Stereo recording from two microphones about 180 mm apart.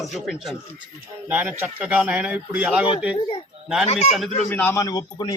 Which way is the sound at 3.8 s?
35° left (ahead or behind).